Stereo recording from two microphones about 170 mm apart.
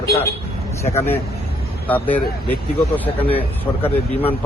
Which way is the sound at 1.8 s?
10° left (ahead or behind).